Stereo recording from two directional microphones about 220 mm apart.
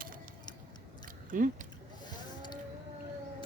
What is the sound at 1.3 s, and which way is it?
Speech, 40° right (ahead or behind).